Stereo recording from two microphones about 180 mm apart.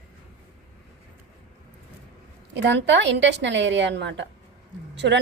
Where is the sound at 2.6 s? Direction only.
75° right (ahead or behind).